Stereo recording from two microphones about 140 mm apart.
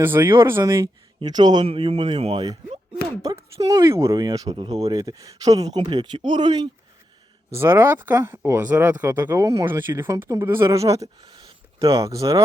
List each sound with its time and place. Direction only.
0.0 s speech: 15° right (ahead or behind)
1.2 s speech: 30° right (ahead or behind)
3.2 s speech: 25° right (ahead or behind)
7.5 s speech: 20° right (ahead or behind)